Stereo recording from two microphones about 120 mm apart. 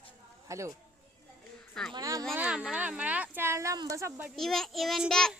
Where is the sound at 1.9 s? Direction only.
30° right (ahead or behind).